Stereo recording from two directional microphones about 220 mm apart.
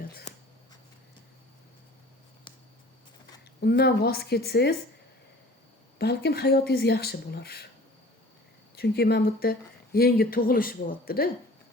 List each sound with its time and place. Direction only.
3.6 s speech: 45° left (ahead or behind)
6.0 s speech: 45° left (ahead or behind)
8.7 s speech: 45° left (ahead or behind)